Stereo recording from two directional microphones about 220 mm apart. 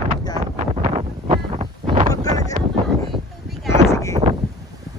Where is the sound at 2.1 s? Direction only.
15° left (ahead or behind).